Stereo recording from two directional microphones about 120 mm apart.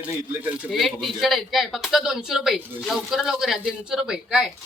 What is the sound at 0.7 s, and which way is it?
Speech, centre (ahead or behind).